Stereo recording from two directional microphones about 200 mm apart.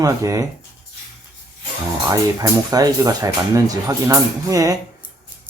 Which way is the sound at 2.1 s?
20° right (ahead or behind).